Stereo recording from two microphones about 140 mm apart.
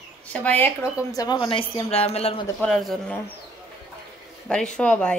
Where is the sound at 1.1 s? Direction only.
30° left (ahead or behind); by 2.4 s 45° left (ahead or behind).